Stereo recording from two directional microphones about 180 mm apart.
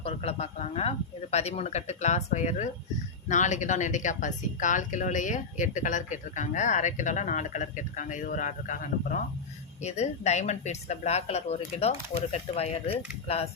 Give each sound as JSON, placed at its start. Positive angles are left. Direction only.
{"t": 0.0, "sound": "speech", "side_deg": 35}